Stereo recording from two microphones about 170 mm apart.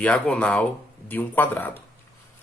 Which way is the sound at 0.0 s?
5° left (ahead or behind).